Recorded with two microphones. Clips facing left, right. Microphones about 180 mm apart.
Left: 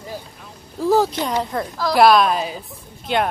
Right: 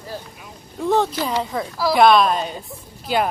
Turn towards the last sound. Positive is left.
turn(degrees=-5)  # may be behind; listen again after turning